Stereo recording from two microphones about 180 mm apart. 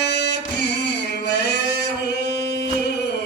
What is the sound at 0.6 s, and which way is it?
Singing, 70° left (ahead or behind).